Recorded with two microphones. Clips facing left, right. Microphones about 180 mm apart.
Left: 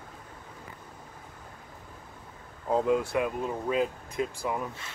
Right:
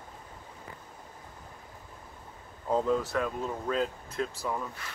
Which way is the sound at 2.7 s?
10° left (ahead or behind).